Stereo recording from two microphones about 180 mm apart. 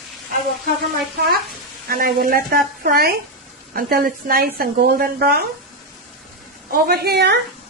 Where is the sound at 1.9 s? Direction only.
55° right (ahead or behind).